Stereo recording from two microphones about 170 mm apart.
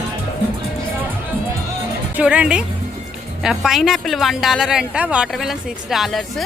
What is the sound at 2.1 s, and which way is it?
A woman's voice, 5° right (ahead or behind).